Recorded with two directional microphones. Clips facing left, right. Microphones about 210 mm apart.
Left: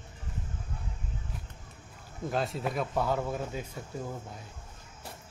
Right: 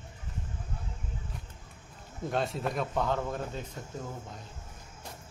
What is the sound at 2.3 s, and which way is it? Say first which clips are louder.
Speech: even; centre (ahead or behind).